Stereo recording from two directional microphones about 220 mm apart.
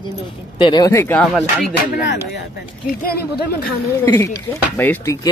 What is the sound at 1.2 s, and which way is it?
Music, centre (ahead or behind).